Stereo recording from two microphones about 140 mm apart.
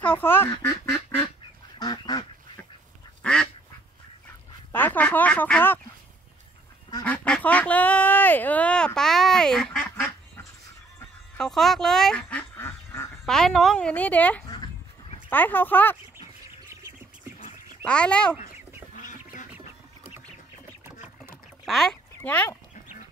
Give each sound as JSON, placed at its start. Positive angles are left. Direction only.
{"t": 0.0, "sound": "speech", "side_deg": 15}
{"t": 1.8, "sound": "duck", "side_deg": 30}
{"t": 3.2, "sound": "duck", "side_deg": 5}
{"t": 4.7, "sound": "a sound", "side_deg": 15}
{"t": 7.1, "sound": "duck", "side_deg": 10}
{"t": 11.3, "sound": "duck", "side_deg": 5}
{"t": 13.2, "sound": "a sound", "side_deg": 5}
{"t": 15.2, "sound": "speech", "side_deg": 15}
{"t": 17.8, "sound": "speech", "side_deg": 5}
{"t": 18.9, "sound": "duck", "side_deg": 70}
{"t": 21.6, "sound": "a sound", "side_deg": 0}
{"t": 22.2, "sound": "dog", "side_deg": 10}